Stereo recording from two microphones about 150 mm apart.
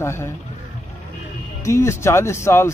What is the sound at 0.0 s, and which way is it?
Speech, 20° left (ahead or behind).